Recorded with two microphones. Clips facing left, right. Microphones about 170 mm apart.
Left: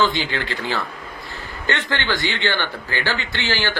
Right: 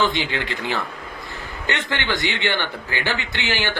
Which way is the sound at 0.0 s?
20° right (ahead or behind).